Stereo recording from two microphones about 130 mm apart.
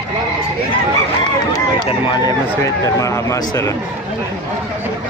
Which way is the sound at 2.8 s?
25° left (ahead or behind).